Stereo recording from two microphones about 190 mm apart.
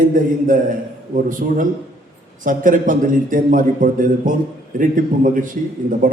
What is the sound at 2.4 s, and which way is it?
A man's voice, 45° right (ahead or behind).